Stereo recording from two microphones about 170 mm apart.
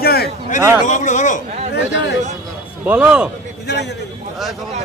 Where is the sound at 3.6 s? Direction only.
80° left.